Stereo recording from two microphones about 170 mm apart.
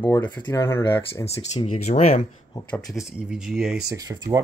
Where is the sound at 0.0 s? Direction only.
10° left (ahead or behind).